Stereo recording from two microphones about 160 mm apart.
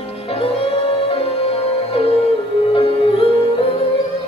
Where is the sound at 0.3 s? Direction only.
40° left (ahead or behind).